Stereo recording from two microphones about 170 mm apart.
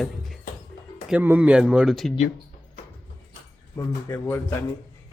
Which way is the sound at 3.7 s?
15° left (ahead or behind).